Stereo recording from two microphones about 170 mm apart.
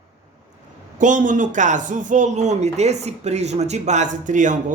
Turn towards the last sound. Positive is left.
turn(degrees=-50)  # may be behind; listen again after turning